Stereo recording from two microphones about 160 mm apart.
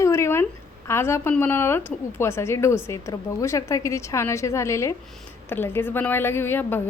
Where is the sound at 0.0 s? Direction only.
15° left (ahead or behind).